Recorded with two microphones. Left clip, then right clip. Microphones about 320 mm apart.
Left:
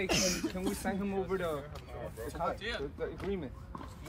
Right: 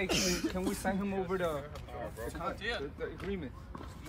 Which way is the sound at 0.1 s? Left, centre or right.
Left.